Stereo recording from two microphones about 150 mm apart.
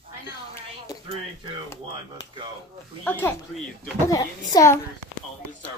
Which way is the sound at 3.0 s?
15° left (ahead or behind).